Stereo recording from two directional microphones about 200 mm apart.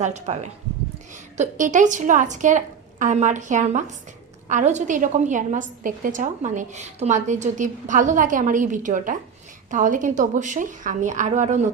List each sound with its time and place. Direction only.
0.0 s a woman's voice: 35° right (ahead or behind)